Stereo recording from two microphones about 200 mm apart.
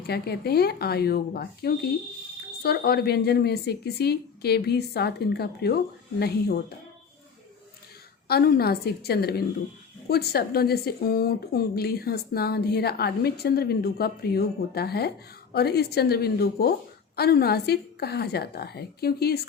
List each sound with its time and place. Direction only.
0.1 s a woman's voice: 50° left (ahead or behind)
8.3 s a woman's voice: 50° left (ahead or behind)